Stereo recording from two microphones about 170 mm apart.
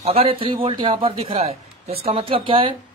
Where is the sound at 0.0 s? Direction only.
35° right (ahead or behind).